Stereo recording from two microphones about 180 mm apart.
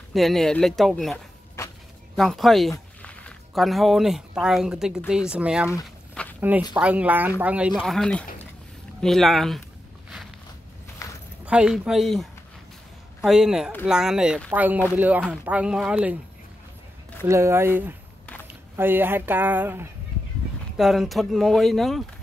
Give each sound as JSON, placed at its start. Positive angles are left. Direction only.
{"t": 0.1, "sound": "speech", "side_deg": 0}
{"t": 1.6, "sound": "a sound", "side_deg": 15}
{"t": 2.1, "sound": "speech", "side_deg": 0}
{"t": 6.2, "sound": "a sound", "side_deg": 5}
{"t": 6.7, "sound": "speech", "side_deg": -10}
{"t": 11.0, "sound": "a sound", "side_deg": 15}
{"t": 11.4, "sound": "speech", "side_deg": -5}
{"t": 17.3, "sound": "speech", "side_deg": -15}
{"t": 20.7, "sound": "speech", "side_deg": 0}